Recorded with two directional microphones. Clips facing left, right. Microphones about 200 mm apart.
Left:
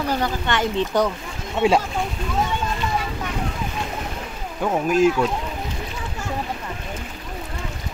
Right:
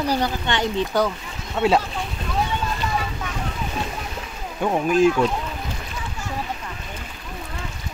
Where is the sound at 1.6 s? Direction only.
10° left (ahead or behind).